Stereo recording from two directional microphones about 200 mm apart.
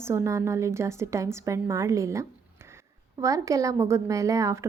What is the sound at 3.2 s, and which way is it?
A woman's voice, 15° right (ahead or behind).